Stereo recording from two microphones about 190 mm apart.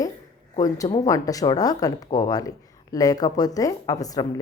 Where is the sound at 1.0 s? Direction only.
20° left (ahead or behind).